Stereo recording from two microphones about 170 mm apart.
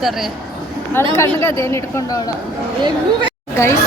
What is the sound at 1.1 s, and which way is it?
Speech, 15° left (ahead or behind).